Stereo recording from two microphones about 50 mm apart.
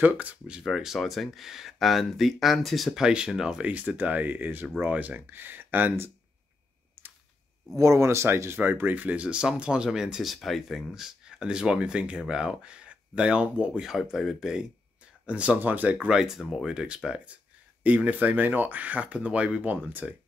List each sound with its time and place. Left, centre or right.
0.0 s speech: right
0.7 s speech: centre
3.0 s speech: centre
3.6 s speech: right
7.7 s speech: right; by 10.2 s centre
10.2 s speech: centre; by 13.8 s right
13.8 s speech: centre
15.2 s speech: right
15.6 s speech: right
16.1 s speech: centre
17.8 s speech: right